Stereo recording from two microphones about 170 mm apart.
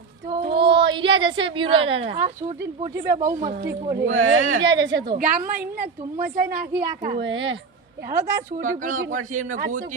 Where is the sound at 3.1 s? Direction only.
20° right (ahead or behind).